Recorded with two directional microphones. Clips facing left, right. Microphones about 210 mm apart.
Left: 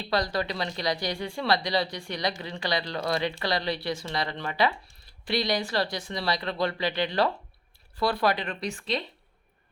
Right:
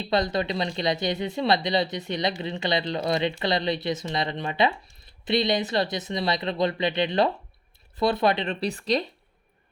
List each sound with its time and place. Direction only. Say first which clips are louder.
0.0 s speech: right 3 dB; 20° right (ahead or behind)
8.7 s speech: right 7 dB; 40° right (ahead or behind)